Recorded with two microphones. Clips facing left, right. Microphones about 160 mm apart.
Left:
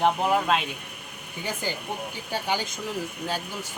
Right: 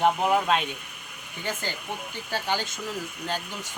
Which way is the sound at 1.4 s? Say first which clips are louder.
Left 1 dB; 10° left (ahead or behind).